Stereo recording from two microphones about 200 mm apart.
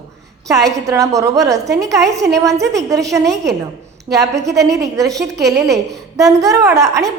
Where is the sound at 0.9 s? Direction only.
15° right (ahead or behind).